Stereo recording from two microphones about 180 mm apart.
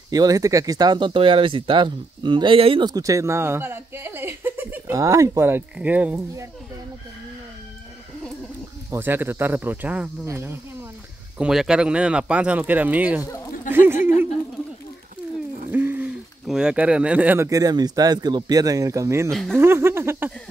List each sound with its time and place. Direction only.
0.1 s speech: 20° right (ahead or behind)
8.9 s speech: 10° right (ahead or behind)
13.7 s a sound: 10° right (ahead or behind)
15.7 s speech: 10° right (ahead or behind)
19.3 s speech: centre (ahead or behind)
19.6 s speech: 15° right (ahead or behind)